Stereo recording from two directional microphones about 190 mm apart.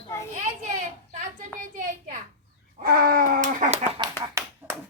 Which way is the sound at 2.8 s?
50° right (ahead or behind).